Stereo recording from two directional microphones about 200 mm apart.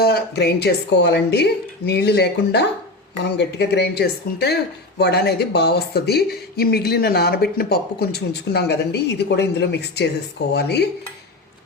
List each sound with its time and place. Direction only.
0.0 s a woman's voice: 50° left (ahead or behind)